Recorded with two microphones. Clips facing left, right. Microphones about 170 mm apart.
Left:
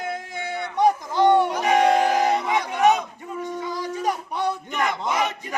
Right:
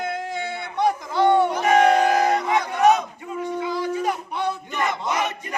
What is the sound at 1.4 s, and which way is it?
Crowd, 10° left (ahead or behind).